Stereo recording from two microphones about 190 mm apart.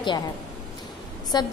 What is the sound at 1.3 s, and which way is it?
Speech, 25° left (ahead or behind).